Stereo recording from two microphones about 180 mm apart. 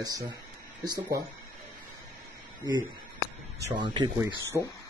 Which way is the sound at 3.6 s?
25° right (ahead or behind).